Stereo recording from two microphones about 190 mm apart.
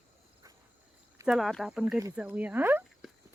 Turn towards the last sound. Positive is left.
turn(degrees=0)  # may be behind; listen again after turning